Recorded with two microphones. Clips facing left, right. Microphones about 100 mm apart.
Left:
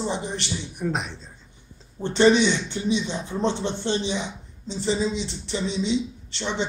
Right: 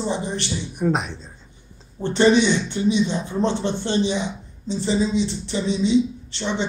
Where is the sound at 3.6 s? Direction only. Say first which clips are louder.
Right 2 dB; 45° right (ahead or behind).